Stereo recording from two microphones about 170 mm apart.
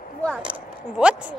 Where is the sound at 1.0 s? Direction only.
5° right (ahead or behind).